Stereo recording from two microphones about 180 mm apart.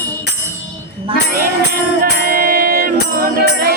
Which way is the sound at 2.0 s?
55° right (ahead or behind).